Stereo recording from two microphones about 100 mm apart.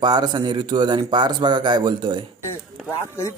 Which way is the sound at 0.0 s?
45° right (ahead or behind).